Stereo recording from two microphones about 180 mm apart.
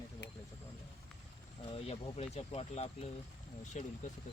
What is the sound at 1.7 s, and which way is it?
Speech, 35° left (ahead or behind).